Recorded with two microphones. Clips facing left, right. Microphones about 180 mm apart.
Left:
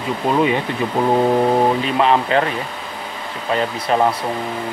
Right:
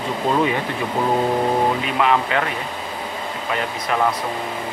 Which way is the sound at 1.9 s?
30° left (ahead or behind).